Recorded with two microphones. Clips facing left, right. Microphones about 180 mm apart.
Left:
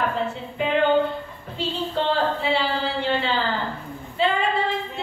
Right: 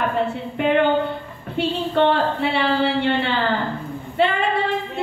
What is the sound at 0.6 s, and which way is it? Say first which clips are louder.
A woman's voice: right 2 dB; 60° right (ahead or behind).